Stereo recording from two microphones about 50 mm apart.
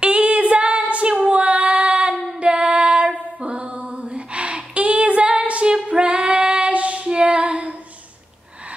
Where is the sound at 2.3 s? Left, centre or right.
Right.